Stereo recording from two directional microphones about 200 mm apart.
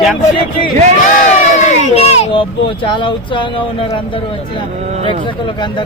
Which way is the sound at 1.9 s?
30° left (ahead or behind).